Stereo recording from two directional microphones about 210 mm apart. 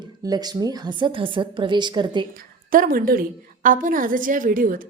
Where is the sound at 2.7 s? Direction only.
40° right (ahead or behind).